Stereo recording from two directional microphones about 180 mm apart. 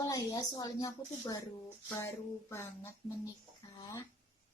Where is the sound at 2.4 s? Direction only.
15° left (ahead or behind).